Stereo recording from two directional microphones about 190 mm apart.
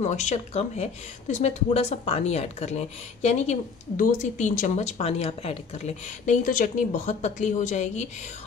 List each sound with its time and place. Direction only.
0.0 s speech: 35° left (ahead or behind)